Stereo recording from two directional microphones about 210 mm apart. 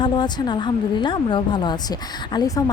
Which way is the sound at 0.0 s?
20° left (ahead or behind).